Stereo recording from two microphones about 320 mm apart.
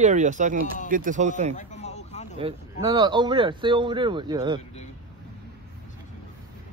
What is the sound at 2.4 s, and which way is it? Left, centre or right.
Speech, centre.